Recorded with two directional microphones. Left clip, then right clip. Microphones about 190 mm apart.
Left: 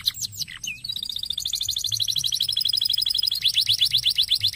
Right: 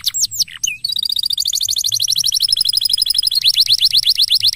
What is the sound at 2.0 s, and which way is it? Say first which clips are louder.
Alarm: right 8 dB; 20° right (ahead or behind).